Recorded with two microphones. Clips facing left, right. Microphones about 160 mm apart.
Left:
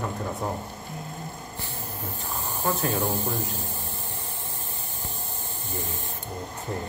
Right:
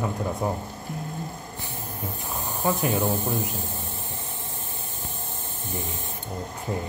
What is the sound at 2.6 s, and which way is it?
Speech, 15° right (ahead or behind).